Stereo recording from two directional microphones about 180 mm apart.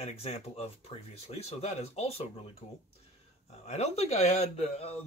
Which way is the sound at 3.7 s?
35° left (ahead or behind).